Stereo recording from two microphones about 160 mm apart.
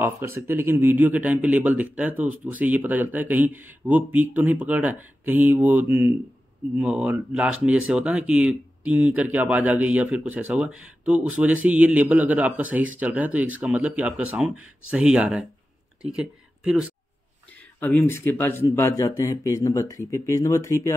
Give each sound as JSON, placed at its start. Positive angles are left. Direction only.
{"t": 0.0, "sound": "speech", "side_deg": -15}
{"t": 17.7, "sound": "speech", "side_deg": 15}